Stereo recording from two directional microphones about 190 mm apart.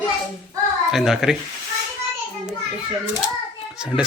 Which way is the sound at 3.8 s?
5° right (ahead or behind).